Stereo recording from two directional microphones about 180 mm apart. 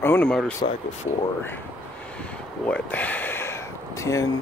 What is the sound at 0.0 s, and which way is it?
Speech, 10° left (ahead or behind).